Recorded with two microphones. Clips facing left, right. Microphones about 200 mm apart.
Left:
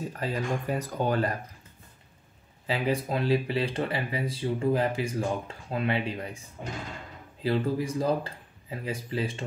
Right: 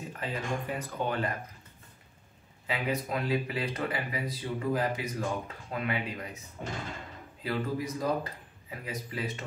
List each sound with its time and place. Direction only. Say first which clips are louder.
0.1 s speech: left 1 dB; 40° left (ahead or behind)
2.6 s speech: left 4 dB; 30° left (ahead or behind)
7.4 s speech: left 5 dB; 30° left (ahead or behind)